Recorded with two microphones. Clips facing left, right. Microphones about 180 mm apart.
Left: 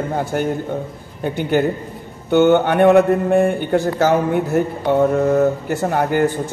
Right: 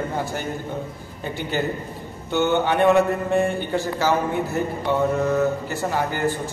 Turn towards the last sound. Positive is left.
turn(degrees=55)  # may be behind; listen again after turning